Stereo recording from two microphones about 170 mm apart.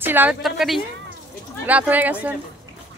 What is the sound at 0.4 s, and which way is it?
Speech, centre (ahead or behind).